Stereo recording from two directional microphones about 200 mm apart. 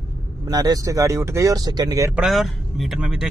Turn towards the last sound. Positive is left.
turn(degrees=-5)  # may be behind; listen again after turning